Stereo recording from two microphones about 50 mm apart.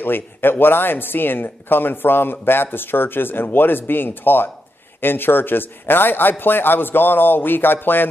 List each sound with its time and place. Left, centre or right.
0.0 s speech: left